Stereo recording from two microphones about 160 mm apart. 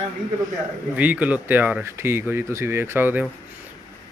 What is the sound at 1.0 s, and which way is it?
A man's voice, 10° right (ahead or behind).